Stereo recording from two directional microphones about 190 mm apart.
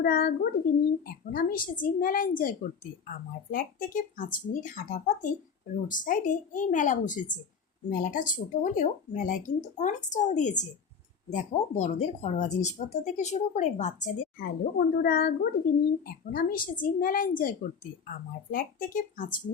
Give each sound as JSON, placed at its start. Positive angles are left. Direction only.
{"t": 0.0, "sound": "a child's voice", "side_deg": 55}
{"t": 14.3, "sound": "a child's voice", "side_deg": 55}
{"t": 18.5, "sound": "a child's voice", "side_deg": 45}